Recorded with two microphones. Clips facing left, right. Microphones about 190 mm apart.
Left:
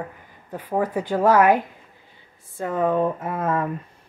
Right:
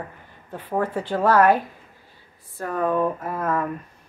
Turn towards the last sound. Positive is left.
turn(degrees=25)  # may be behind; listen again after turning